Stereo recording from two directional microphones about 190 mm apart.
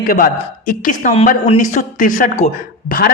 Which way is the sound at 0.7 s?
45° left (ahead or behind).